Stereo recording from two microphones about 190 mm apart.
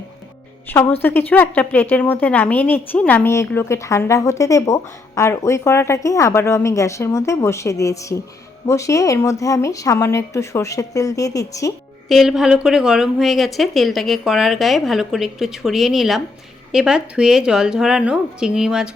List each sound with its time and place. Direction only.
0.7 s speech: 10° left (ahead or behind)
12.0 s a woman's voice: centre (ahead or behind)